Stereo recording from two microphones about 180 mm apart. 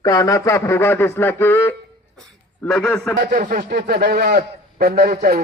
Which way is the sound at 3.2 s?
50° right (ahead or behind).